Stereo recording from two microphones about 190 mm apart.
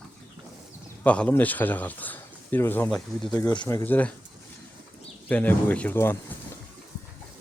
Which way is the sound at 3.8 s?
10° left (ahead or behind).